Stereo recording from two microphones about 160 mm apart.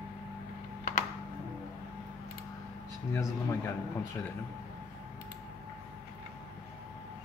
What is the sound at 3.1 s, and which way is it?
Speech, 15° left (ahead or behind).